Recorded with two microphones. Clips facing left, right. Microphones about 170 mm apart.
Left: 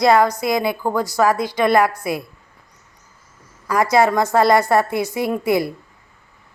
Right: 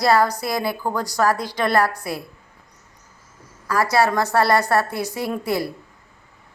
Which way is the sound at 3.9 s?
15° left (ahead or behind).